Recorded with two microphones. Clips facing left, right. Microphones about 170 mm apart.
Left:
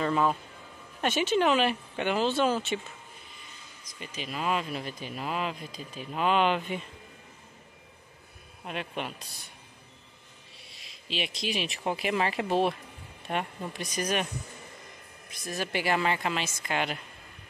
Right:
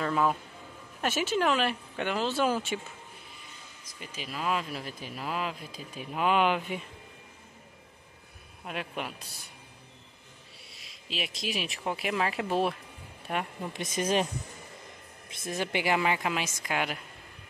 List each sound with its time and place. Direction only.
0.0 s speech: centre (ahead or behind)
4.0 s speech: 5° right (ahead or behind)
8.6 s speech: 5° right (ahead or behind)
10.8 s speech: centre (ahead or behind)
13.7 s speech: 25° right (ahead or behind)
15.3 s speech: 20° right (ahead or behind); by 17.0 s 5° right (ahead or behind)